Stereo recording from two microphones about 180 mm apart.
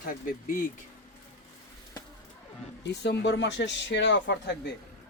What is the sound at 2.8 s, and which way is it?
Speech, 70° left (ahead or behind).